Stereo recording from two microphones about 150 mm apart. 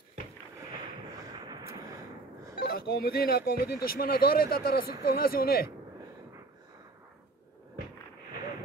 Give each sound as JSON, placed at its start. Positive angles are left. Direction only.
{"t": 2.5, "sound": "speech", "side_deg": 90}